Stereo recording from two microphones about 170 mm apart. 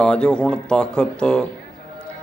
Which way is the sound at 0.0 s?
5° left (ahead or behind).